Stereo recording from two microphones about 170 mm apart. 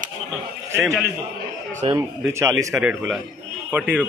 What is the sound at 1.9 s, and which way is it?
A man's voice, 15° right (ahead or behind).